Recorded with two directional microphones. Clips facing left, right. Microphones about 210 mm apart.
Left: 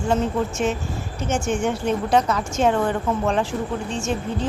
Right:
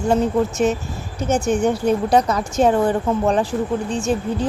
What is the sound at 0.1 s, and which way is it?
A woman's voice, 40° right (ahead or behind).